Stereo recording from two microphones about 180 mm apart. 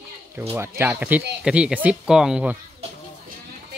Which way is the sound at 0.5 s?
15° right (ahead or behind).